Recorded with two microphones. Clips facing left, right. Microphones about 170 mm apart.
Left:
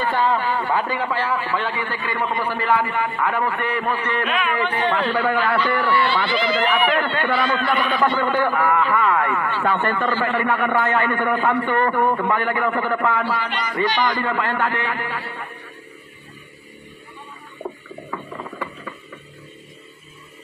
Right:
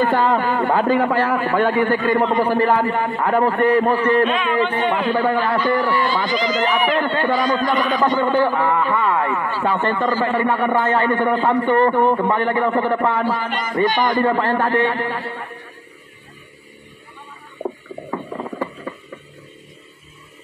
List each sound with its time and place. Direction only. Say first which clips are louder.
0.0 s a man's voice: right 4 dB; 45° right (ahead or behind); by 5.4 s 30° right (ahead or behind)
5.9 s a man's voice: right 1 dB; 40° right (ahead or behind)
8.2 s a man's voice: right 3 dB; 25° right (ahead or behind)
13.2 s a man's voice: right 3 dB; 45° right (ahead or behind)
14.1 s a man's voice: right 6 dB; 35° right (ahead or behind)
18.3 s a sound: right 5 dB; 30° right (ahead or behind)